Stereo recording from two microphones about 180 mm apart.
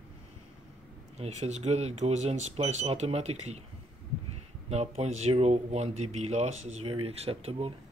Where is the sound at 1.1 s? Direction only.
35° right (ahead or behind).